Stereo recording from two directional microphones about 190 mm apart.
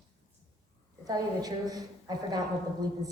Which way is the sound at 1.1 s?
20° right (ahead or behind).